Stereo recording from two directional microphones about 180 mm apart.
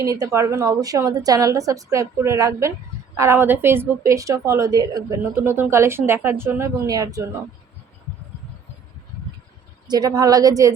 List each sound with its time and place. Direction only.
0.0 s a woman's voice: 15° right (ahead or behind)
9.8 s a woman's voice: 20° right (ahead or behind)